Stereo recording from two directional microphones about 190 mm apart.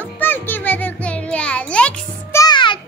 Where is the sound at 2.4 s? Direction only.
25° left (ahead or behind).